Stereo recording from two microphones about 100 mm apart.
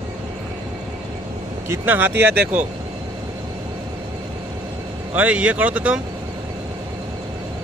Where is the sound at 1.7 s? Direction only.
20° right (ahead or behind).